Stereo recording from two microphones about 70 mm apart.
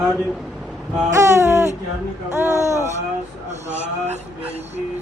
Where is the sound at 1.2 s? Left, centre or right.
Right.